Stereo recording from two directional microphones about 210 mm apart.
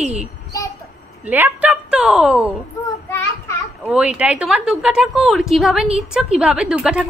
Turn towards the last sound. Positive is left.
turn(degrees=-5)  # may be behind; listen again after turning